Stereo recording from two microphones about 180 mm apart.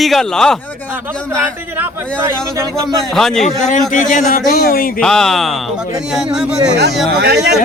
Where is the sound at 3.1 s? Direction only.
Centre (ahead or behind).